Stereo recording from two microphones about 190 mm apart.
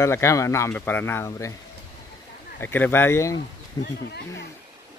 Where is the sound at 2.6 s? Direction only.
10° left (ahead or behind).